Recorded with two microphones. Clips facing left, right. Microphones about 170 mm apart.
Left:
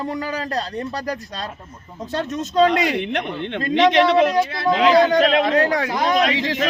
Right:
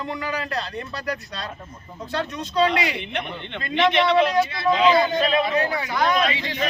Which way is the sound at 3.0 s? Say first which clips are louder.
Left 6 dB; 85° left.